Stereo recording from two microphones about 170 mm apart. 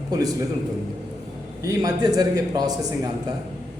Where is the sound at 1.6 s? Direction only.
20° right (ahead or behind).